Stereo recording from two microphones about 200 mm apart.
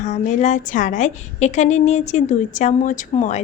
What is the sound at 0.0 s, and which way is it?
A woman's voice, 35° left (ahead or behind).